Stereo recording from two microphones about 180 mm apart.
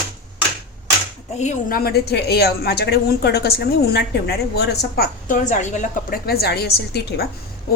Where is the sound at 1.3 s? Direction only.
40° left (ahead or behind).